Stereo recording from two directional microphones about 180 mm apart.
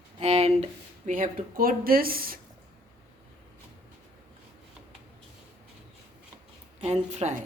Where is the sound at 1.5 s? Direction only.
55° right (ahead or behind).